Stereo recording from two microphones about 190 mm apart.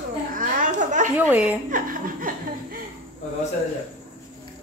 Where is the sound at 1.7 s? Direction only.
45° right (ahead or behind).